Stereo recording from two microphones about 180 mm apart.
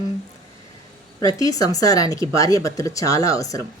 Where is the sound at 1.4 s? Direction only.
20° left (ahead or behind).